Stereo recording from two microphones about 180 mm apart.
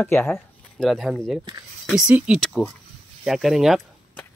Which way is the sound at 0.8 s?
Centre (ahead or behind).